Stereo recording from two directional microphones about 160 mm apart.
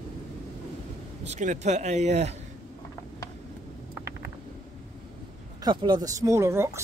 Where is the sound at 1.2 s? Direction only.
45° right (ahead or behind).